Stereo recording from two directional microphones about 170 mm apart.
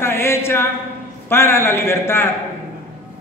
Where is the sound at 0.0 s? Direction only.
15° left (ahead or behind).